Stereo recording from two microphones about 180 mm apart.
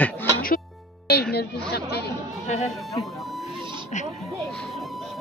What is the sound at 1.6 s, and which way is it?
Speech, 65° left (ahead or behind).